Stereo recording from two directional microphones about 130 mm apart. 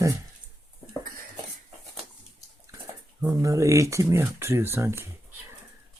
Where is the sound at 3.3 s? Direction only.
25° right (ahead or behind).